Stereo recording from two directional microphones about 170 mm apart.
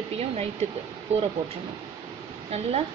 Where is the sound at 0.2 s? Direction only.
40° right (ahead or behind).